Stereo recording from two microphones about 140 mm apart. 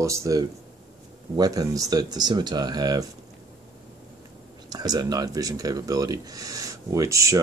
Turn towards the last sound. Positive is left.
turn(degrees=-20)  # may be behind; listen again after turning